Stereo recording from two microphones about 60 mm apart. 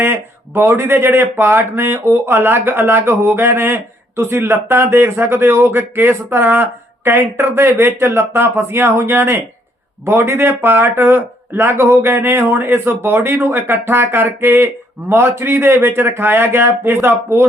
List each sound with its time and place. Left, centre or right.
0.0 s speech: right